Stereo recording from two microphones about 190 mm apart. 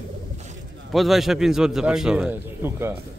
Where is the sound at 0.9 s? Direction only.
Centre (ahead or behind).